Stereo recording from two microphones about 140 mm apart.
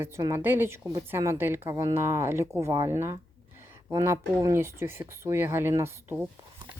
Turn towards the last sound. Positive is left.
turn(degrees=-15)  # may be behind; listen again after turning